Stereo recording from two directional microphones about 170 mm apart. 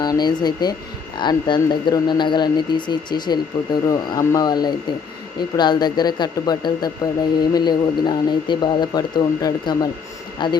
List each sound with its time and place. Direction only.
0.0 s speech: 25° left (ahead or behind)